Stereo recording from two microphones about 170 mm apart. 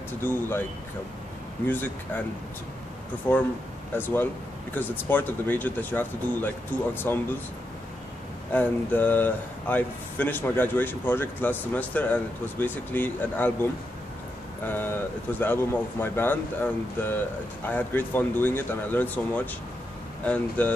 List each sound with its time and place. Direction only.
0.2 s speech: 10° left (ahead or behind)
1.7 s speech: 10° left (ahead or behind)
3.3 s speech: 15° left (ahead or behind)
8.5 s speech: 10° left (ahead or behind)